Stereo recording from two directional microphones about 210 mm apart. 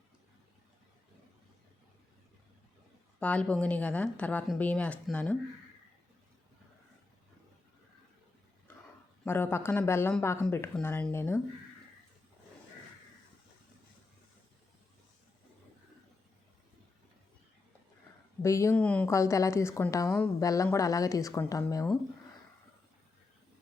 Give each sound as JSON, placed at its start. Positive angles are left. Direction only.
{"t": 3.2, "sound": "a woman's voice", "side_deg": 5}
{"t": 9.2, "sound": "a woman's voice", "side_deg": 10}
{"t": 18.4, "sound": "a woman's voice", "side_deg": 15}